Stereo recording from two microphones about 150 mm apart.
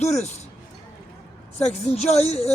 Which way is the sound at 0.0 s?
45° left (ahead or behind).